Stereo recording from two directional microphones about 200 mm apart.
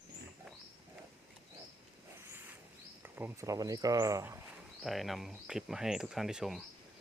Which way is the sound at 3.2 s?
15° right (ahead or behind).